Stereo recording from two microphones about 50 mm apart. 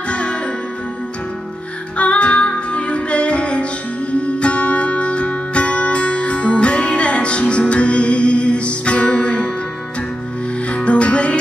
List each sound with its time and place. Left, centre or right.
0.1 s music: left
2.0 s music: left
10.7 s music: left